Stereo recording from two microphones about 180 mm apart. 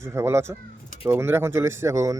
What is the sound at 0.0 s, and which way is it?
A man's voice, 15° right (ahead or behind).